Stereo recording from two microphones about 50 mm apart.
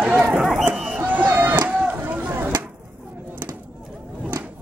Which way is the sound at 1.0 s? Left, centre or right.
Right.